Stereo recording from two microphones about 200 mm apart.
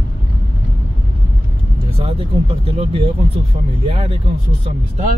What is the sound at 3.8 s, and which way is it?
Speech, 30° right (ahead or behind).